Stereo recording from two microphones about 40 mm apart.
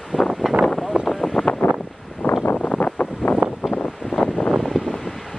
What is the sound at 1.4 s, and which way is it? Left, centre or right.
Wind noise, left.